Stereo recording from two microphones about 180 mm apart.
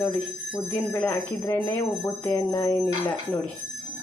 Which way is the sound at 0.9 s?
10° left (ahead or behind).